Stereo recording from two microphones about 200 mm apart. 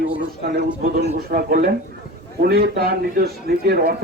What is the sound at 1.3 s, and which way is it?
A man's voice, 45° right (ahead or behind).